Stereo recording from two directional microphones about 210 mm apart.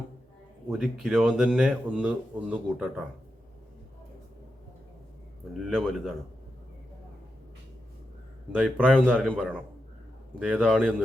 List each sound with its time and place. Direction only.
0.7 s a man's voice: centre (ahead or behind)
5.7 s a man's voice: centre (ahead or behind)
8.5 s a man's voice: centre (ahead or behind)